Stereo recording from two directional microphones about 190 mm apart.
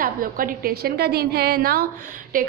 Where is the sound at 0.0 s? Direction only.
45° right (ahead or behind).